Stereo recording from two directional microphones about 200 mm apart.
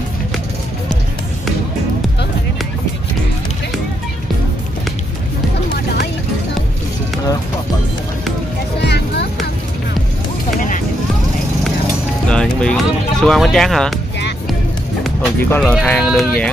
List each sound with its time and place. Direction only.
8.8 s music: 55° left (ahead or behind)
12.3 s music: 5° left (ahead or behind)
15.0 s speech: centre (ahead or behind)